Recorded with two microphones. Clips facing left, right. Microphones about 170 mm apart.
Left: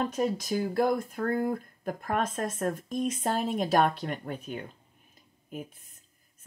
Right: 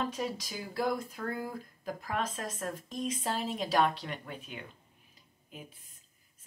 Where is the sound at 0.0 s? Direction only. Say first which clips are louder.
Left 6 dB; 50° left (ahead or behind).